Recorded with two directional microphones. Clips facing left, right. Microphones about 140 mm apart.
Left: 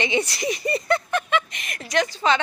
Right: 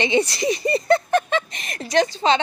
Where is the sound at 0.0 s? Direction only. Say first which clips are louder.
Right 4 dB; 25° right (ahead or behind).